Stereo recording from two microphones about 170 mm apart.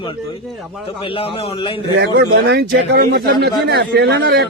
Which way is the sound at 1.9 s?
90° right.